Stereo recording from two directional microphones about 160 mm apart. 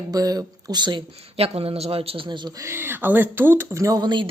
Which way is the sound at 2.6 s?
15° right (ahead or behind).